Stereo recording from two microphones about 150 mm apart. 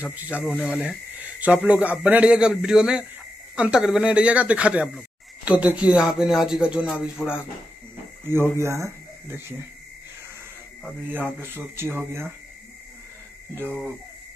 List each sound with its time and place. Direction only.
0.0 s speech: 10° right (ahead or behind)
8.3 s speech: 15° right (ahead or behind)
10.8 s speech: 10° right (ahead or behind)
13.6 s speech: 15° right (ahead or behind)